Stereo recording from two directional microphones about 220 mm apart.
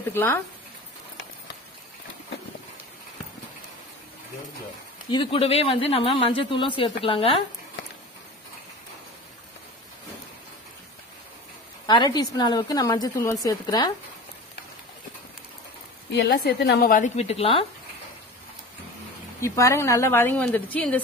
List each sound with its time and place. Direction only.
0.1 s a woman's voice: 10° left (ahead or behind)
5.1 s speech: 25° left (ahead or behind)
11.8 s a woman's voice: 20° left (ahead or behind)
16.1 s a woman's voice: 50° left (ahead or behind)
16.9 s speech: 30° left (ahead or behind)
19.4 s a woman's voice: 15° left (ahead or behind)